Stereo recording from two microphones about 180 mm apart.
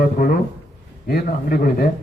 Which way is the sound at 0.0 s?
50° left (ahead or behind).